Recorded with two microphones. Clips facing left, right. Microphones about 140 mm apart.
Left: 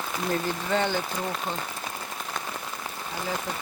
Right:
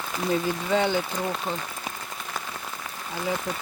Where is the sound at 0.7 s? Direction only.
10° right (ahead or behind).